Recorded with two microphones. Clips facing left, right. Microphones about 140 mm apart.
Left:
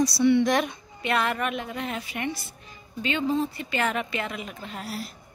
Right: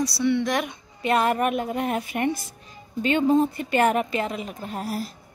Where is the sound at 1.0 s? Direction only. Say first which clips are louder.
Right 5 dB; 40° right (ahead or behind).